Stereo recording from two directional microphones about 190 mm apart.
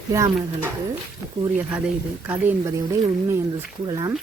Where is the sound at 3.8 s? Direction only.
20° right (ahead or behind).